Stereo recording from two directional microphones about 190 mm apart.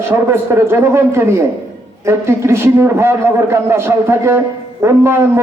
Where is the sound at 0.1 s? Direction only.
15° right (ahead or behind).